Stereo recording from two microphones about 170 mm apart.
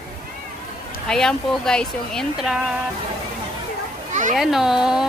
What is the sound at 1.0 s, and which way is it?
Speech, 5° left (ahead or behind).